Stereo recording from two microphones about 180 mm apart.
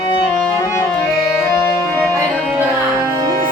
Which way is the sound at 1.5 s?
15° left (ahead or behind).